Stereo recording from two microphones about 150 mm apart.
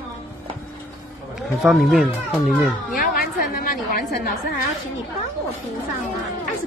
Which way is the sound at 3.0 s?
70° left (ahead or behind).